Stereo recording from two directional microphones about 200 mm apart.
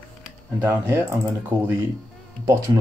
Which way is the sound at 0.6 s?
10° right (ahead or behind).